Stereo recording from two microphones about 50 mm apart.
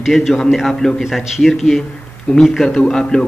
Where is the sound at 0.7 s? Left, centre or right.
Centre.